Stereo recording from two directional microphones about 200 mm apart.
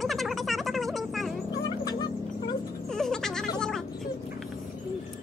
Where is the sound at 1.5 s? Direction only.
20° left (ahead or behind).